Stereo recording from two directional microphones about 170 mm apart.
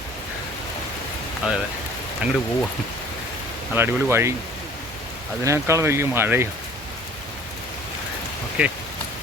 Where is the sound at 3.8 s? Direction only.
15° right (ahead or behind).